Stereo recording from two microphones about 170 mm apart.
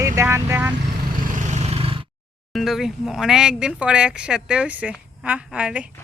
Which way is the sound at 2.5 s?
Centre (ahead or behind).